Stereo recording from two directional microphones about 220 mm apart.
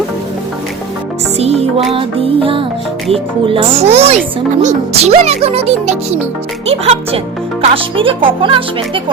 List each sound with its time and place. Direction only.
1.4 s music: 30° right (ahead or behind)
3.1 s speech: 25° right (ahead or behind)